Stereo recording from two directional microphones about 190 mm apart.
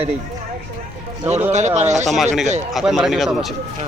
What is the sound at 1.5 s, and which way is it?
Speech, 35° right (ahead or behind).